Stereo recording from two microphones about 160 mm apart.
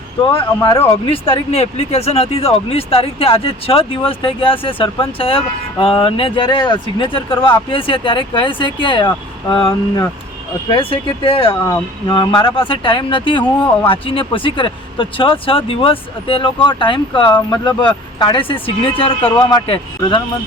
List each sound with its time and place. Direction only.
0.3 s speech: 30° left (ahead or behind)